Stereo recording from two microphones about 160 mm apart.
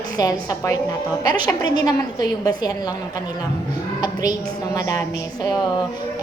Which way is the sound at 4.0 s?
25° left (ahead or behind).